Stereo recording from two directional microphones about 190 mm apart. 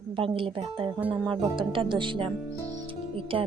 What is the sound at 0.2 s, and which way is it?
Speech, 30° right (ahead or behind).